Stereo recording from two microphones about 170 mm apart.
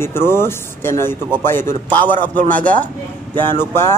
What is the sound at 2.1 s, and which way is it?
Mantra, 50° right (ahead or behind).